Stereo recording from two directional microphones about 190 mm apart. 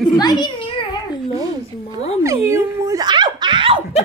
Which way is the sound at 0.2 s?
20° left (ahead or behind).